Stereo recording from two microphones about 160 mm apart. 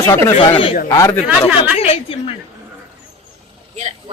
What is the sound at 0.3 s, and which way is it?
Speech, 35° left (ahead or behind).